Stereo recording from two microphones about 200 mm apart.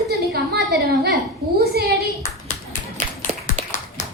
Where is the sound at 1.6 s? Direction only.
50° right (ahead or behind).